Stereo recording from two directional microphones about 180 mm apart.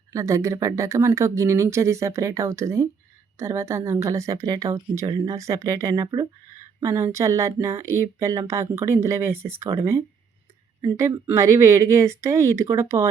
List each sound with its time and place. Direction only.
0.1 s speech: 15° right (ahead or behind)
10.8 s speech: 20° right (ahead or behind)